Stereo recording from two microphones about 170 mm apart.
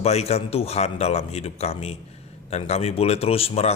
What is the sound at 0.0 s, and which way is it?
A man's voice, 40° left (ahead or behind).